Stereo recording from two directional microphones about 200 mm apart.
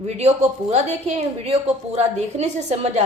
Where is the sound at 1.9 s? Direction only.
35° right (ahead or behind).